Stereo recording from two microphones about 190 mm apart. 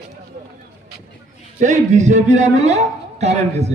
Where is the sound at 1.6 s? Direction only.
40° right (ahead or behind).